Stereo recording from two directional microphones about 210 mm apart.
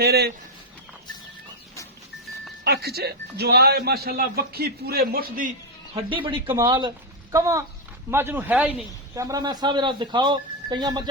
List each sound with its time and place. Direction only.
0.0 s speech: 50° right (ahead or behind)
2.6 s speech: 50° right (ahead or behind)
5.9 s speech: 25° right (ahead or behind)